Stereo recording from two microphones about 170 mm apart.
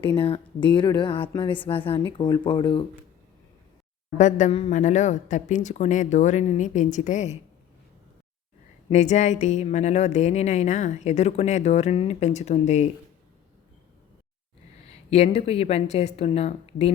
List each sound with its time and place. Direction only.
0.0 s a woman's voice: 30° left (ahead or behind)
4.2 s a woman's voice: 45° left (ahead or behind)
8.9 s a woman's voice: 45° left (ahead or behind)
14.8 s a woman's voice: 40° left (ahead or behind)